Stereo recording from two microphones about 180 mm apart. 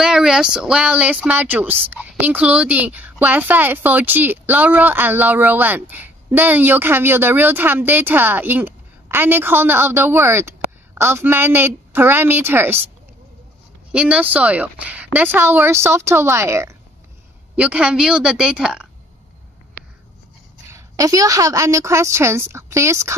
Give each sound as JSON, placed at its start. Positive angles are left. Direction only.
{"t": 0.0, "sound": "speech", "side_deg": -5}
{"t": 13.9, "sound": "a woman's voice", "side_deg": -5}
{"t": 20.7, "sound": "speech", "side_deg": -20}